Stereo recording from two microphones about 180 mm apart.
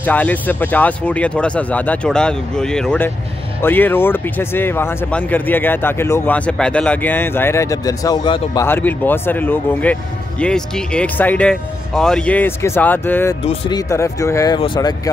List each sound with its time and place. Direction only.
0.0 s speech: 10° left (ahead or behind)
8.6 s speech: 10° left (ahead or behind)
13.4 s speech: 30° left (ahead or behind)